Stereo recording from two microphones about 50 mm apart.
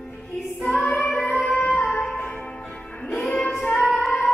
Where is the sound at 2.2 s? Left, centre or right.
Left.